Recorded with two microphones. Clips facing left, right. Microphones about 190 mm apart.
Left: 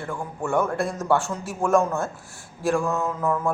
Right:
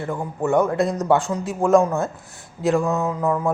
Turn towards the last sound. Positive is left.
turn(degrees=-15)  # may be behind; listen again after turning